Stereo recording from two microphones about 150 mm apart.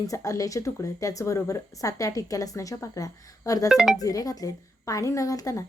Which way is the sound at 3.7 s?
Centre (ahead or behind).